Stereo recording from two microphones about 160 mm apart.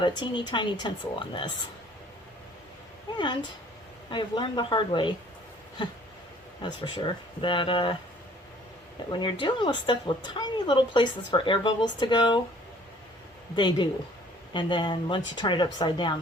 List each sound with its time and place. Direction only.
0.0 s speech: 30° left (ahead or behind)
4.1 s speech: 30° left (ahead or behind)
9.0 s speech: 30° left (ahead or behind)
13.6 s speech: 30° left (ahead or behind)